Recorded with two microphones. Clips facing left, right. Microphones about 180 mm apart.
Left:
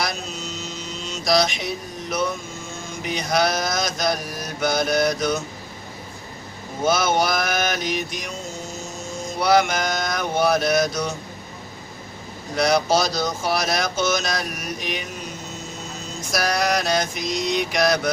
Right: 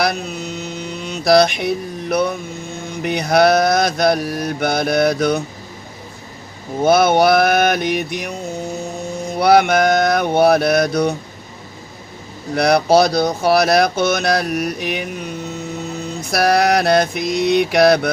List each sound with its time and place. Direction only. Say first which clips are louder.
0.0 s mantra: right 8 dB; 60° right (ahead or behind)
6.8 s speech: right 8 dB; 60° right (ahead or behind)
12.5 s speech: right 6 dB; 60° right (ahead or behind)